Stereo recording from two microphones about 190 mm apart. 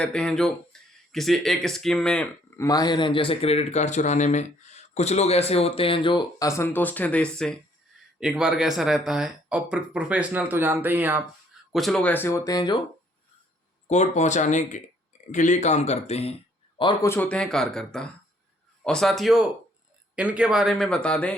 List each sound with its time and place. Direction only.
0.0 s speech: 5° left (ahead or behind)
2.6 s speech: 20° left (ahead or behind); by 11.2 s 10° right (ahead or behind)
11.7 s speech: centre (ahead or behind); by 12.8 s 20° left (ahead or behind)
13.8 s speech: 35° left (ahead or behind)
17.1 s speech: 10° left (ahead or behind)